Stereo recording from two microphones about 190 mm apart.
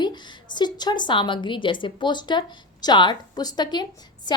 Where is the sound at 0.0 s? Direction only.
20° left (ahead or behind).